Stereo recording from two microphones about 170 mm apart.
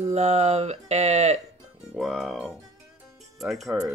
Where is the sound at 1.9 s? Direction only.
Centre (ahead or behind).